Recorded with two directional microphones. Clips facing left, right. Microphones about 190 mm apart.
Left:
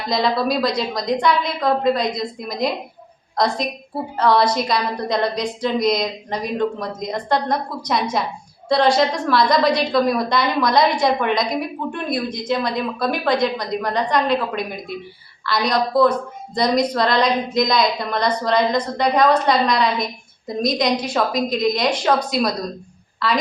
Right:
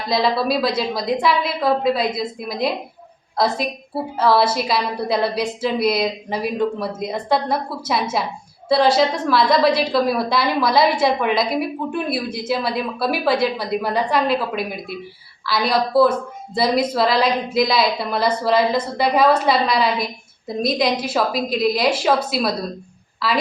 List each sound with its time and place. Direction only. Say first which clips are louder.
0.1 s a woman's voice: right 1 dB; centre (ahead or behind)